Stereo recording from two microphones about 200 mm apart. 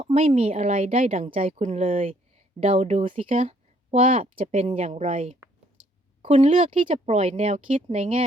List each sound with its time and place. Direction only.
0.0 s a woman's voice: 30° right (ahead or behind)